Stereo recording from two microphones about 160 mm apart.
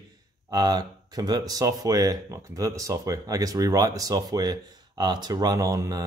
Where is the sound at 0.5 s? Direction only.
25° right (ahead or behind).